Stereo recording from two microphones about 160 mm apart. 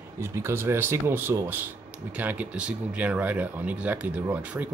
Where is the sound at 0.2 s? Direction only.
15° right (ahead or behind).